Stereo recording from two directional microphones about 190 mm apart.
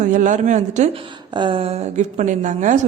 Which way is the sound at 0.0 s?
40° right (ahead or behind).